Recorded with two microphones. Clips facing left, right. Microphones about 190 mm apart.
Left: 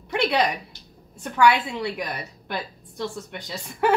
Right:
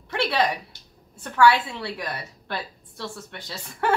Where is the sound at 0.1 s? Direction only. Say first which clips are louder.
Left 3 dB; 15° left (ahead or behind).